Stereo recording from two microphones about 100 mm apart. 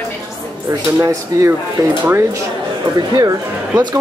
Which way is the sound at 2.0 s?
20° right (ahead or behind).